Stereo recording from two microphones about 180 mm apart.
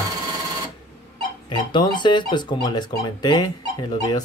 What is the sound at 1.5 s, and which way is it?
Speech, 25° left (ahead or behind).